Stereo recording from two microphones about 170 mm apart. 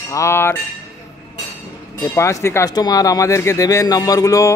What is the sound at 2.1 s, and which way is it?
Speech, 15° left (ahead or behind).